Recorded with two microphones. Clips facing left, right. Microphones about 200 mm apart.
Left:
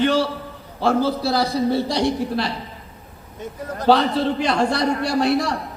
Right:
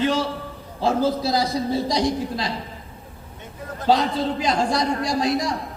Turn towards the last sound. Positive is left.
turn(degrees=65)  # may be behind; listen again after turning